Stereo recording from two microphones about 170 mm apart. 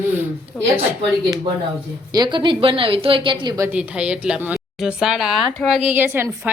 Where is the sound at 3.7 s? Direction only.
5° right (ahead or behind).